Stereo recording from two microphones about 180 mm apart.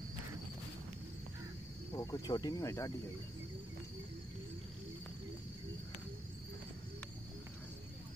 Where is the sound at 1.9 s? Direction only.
20° left (ahead or behind).